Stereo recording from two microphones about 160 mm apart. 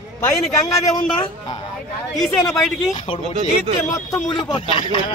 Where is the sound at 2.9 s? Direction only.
25° left (ahead or behind).